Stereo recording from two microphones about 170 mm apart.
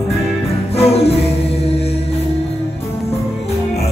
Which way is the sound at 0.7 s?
35° left (ahead or behind).